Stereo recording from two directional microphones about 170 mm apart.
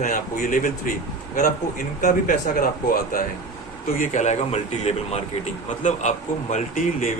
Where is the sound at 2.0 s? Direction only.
50° left (ahead or behind).